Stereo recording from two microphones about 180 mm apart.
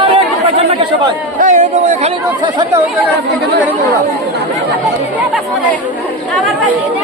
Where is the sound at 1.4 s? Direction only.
45° right (ahead or behind).